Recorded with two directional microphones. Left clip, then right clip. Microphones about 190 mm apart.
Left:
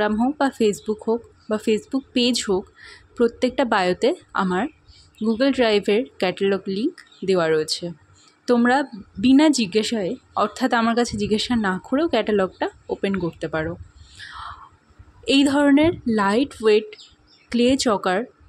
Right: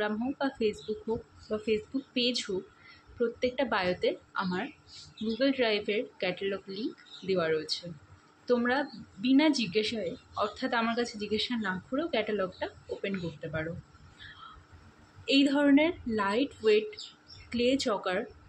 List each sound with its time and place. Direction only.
0.0 s speech: 60° left (ahead or behind)
15.2 s speech: 60° left (ahead or behind)